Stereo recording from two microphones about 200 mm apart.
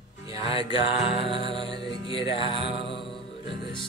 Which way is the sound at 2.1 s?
25° left (ahead or behind).